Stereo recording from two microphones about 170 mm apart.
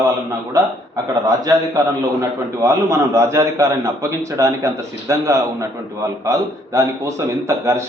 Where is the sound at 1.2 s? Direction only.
20° right (ahead or behind).